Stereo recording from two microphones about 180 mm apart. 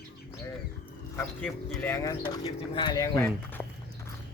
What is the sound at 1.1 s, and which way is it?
Speech, 10° left (ahead or behind).